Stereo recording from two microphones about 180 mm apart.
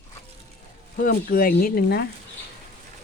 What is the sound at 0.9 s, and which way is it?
Speech, 50° left (ahead or behind).